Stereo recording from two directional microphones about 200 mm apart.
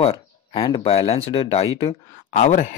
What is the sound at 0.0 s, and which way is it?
Speech, 25° left (ahead or behind).